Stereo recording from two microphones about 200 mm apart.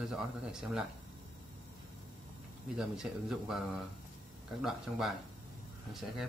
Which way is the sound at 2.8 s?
5° right (ahead or behind).